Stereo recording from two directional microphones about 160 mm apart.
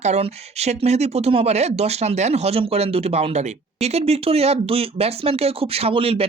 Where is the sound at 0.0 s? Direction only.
45° right (ahead or behind).